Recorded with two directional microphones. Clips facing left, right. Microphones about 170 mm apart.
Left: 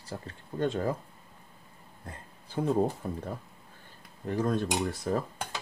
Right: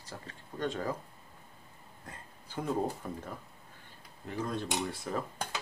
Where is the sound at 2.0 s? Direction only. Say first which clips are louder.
Left 4 dB; 30° left (ahead or behind).